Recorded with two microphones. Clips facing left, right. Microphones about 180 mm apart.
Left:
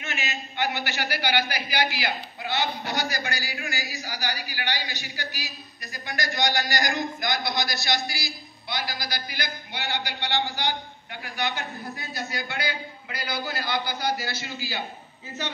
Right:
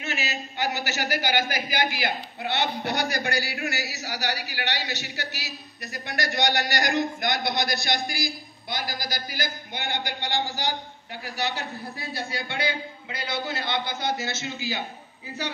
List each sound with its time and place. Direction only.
0.0 s a man's voice: 35° right (ahead or behind); by 14.8 s 20° right (ahead or behind)